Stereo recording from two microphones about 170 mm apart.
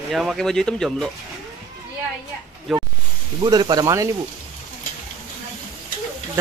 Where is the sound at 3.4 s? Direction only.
25° right (ahead or behind).